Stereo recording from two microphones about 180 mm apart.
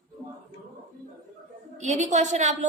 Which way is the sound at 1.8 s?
40° right (ahead or behind).